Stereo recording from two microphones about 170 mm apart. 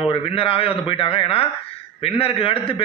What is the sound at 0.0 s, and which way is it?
A man's voice, 30° left (ahead or behind).